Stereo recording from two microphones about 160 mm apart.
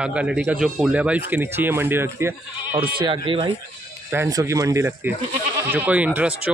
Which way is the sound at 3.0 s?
35° right (ahead or behind).